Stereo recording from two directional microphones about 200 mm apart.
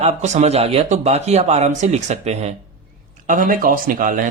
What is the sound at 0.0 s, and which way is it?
A man's voice, 35° right (ahead or behind).